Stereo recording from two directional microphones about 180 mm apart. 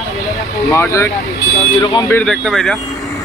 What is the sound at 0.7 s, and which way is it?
Speech, 15° left (ahead or behind).